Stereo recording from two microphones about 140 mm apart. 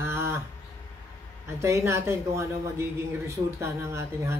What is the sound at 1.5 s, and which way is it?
A man's voice, 20° right (ahead or behind).